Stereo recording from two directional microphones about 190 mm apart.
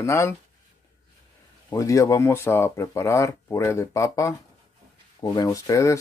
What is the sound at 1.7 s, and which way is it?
Speech, 15° left (ahead or behind).